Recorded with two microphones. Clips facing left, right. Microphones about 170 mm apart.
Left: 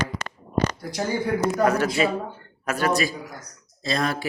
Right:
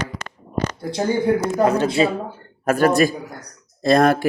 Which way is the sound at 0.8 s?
25° right (ahead or behind).